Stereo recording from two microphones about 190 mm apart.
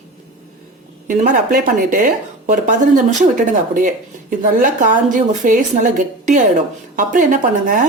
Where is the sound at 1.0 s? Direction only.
40° right (ahead or behind).